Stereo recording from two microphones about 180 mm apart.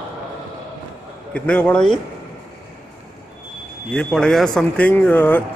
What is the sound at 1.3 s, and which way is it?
Speech, 5° left (ahead or behind).